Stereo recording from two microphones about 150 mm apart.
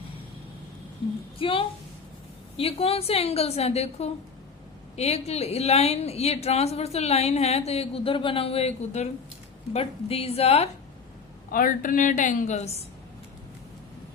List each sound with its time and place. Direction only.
1.4 s a woman's voice: 35° left (ahead or behind)
11.5 s a woman's voice: 65° left (ahead or behind); by 12.7 s 50° left (ahead or behind)